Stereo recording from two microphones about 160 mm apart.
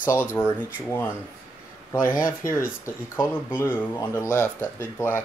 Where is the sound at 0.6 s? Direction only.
10° right (ahead or behind).